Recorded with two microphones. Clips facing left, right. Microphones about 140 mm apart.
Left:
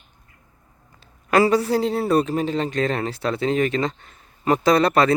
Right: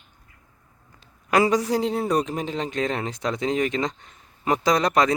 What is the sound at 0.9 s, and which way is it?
A man's voice, 15° right (ahead or behind).